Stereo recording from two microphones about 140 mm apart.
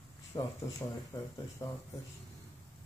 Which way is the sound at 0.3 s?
25° left (ahead or behind).